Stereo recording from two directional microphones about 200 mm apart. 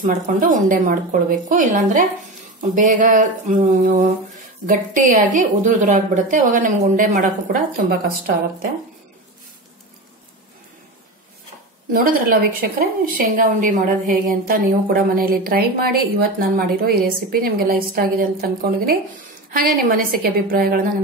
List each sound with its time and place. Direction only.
0.0 s a woman's voice: 40° right (ahead or behind)
11.9 s a woman's voice: 45° right (ahead or behind)